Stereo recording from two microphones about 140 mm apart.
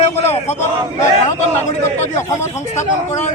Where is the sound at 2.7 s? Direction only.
55° left (ahead or behind).